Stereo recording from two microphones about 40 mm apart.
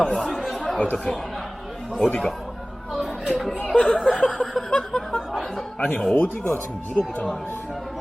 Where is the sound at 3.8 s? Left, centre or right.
Left.